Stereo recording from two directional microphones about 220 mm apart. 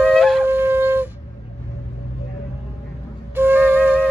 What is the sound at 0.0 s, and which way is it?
Wind instrument, 5° right (ahead or behind).